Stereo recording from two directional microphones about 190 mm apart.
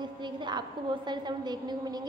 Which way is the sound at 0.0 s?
25° right (ahead or behind).